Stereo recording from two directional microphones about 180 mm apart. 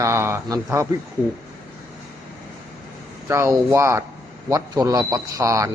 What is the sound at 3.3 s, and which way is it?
Speech, 15° right (ahead or behind).